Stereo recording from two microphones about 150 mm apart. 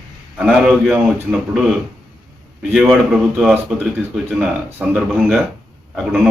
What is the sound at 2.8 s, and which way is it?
Speech, 5° right (ahead or behind).